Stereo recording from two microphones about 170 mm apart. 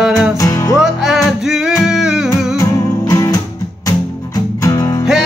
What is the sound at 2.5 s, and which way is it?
Music, 20° left (ahead or behind).